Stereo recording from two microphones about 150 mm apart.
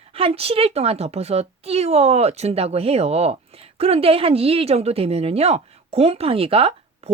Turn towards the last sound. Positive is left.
turn(degrees=-40)  # may be behind; listen again after turning